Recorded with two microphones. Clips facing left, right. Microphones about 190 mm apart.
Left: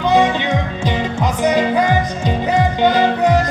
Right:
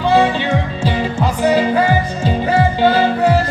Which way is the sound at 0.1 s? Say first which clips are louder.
Right 1 dB; 15° left (ahead or behind).